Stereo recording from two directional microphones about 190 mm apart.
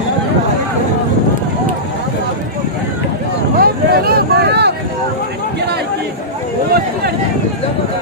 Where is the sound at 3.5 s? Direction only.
50° right (ahead or behind).